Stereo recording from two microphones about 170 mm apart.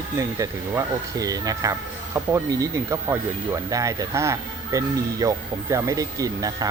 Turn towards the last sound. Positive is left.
turn(degrees=-20)  # may be behind; listen again after turning